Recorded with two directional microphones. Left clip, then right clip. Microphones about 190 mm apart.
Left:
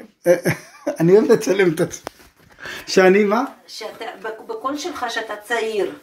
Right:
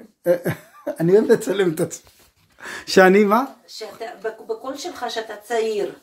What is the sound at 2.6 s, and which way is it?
Speech, 35° right (ahead or behind).